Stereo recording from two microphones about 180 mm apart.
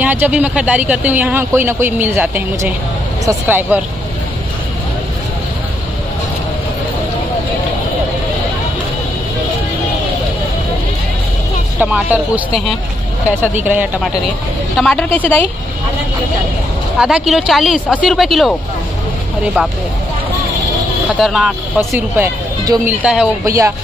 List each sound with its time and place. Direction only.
0.0 s speech: 10° right (ahead or behind)
11.8 s speech: 10° right (ahead or behind)
14.8 s a woman's voice: 5° left (ahead or behind)
17.0 s speech: 5° right (ahead or behind)
21.2 s speech: centre (ahead or behind)
22.1 s speech: 10° right (ahead or behind)